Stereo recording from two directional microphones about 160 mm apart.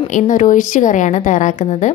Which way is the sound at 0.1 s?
55° left (ahead or behind).